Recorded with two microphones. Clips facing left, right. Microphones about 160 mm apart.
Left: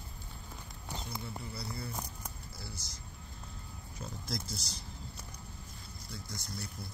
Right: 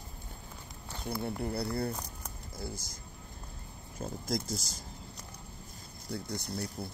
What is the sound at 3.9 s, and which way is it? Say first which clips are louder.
Speech: right 6 dB; 50° right (ahead or behind).